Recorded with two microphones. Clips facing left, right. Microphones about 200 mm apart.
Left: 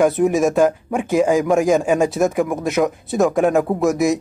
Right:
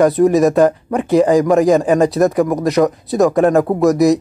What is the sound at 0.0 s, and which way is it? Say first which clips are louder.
Speech: right 4 dB; centre (ahead or behind).